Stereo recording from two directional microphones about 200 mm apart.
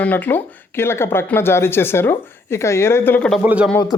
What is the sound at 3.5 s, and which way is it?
Speech, 5° right (ahead or behind).